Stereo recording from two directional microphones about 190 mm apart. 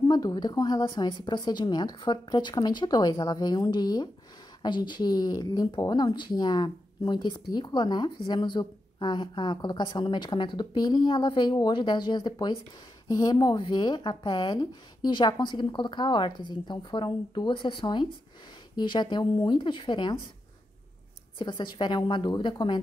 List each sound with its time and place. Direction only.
0.1 s speech: 20° left (ahead or behind)
21.4 s speech: 25° left (ahead or behind)